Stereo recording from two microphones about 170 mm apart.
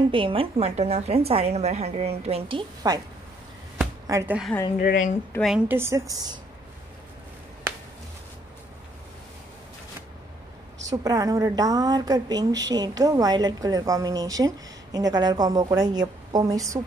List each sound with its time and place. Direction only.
0.1 s a woman's voice: 30° right (ahead or behind)
4.1 s a woman's voice: 20° right (ahead or behind)
4.5 s a woman's voice: 10° left (ahead or behind)
4.8 s a woman's voice: 50° left (ahead or behind)
5.3 s a woman's voice: 15° left (ahead or behind)
5.7 s a woman's voice: 15° right (ahead or behind)
10.9 s a woman's voice: 20° right (ahead or behind)